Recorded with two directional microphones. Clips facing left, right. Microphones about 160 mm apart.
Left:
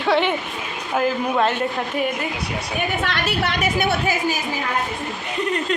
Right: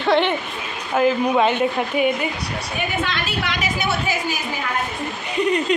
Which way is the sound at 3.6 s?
55° left (ahead or behind).